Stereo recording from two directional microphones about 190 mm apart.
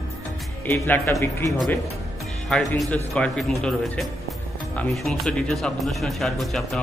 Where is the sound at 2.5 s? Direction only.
Centre (ahead or behind).